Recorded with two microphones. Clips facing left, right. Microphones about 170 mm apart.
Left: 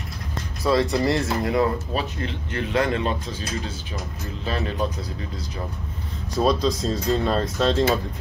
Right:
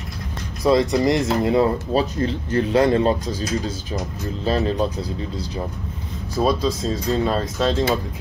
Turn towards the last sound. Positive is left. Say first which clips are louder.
# even
turn(degrees=0)  # may be behind; listen again after turning